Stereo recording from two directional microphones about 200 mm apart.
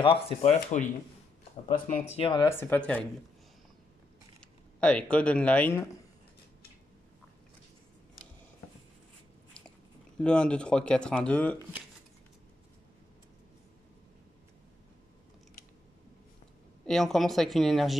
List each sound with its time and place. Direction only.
0.0 s speech: 30° left (ahead or behind)
2.4 s speech: 10° left (ahead or behind)
4.7 s speech: 5° left (ahead or behind)
10.1 s speech: 5° left (ahead or behind)
16.8 s speech: centre (ahead or behind)